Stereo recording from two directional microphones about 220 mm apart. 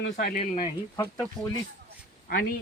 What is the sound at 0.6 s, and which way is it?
Speech, 20° left (ahead or behind).